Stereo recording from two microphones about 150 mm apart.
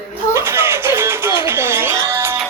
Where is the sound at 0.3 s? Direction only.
15° right (ahead or behind).